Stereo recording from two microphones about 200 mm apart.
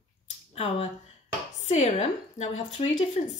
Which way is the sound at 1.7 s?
35° left (ahead or behind).